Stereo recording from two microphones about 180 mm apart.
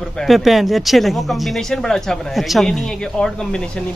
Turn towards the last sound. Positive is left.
turn(degrees=5)  # may be behind; listen again after turning